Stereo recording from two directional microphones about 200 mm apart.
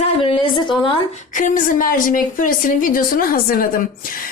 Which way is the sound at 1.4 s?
40° left (ahead or behind).